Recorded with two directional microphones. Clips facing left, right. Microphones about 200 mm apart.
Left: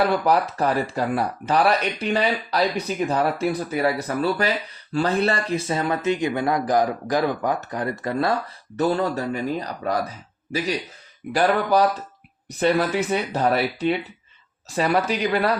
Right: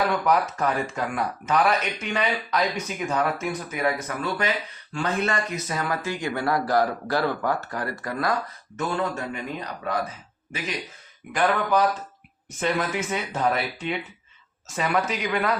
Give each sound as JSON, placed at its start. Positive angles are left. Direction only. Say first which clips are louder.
{"t": 0.1, "sound": "speech", "louder": "left 2 dB", "side_deg": 35}
{"t": 11.3, "sound": "speech", "louder": "left 3 dB", "side_deg": 35}